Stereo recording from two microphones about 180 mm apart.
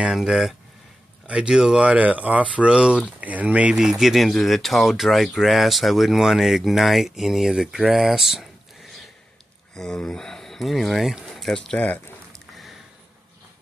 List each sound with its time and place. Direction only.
0.0 s speech: centre (ahead or behind)
9.8 s speech: centre (ahead or behind)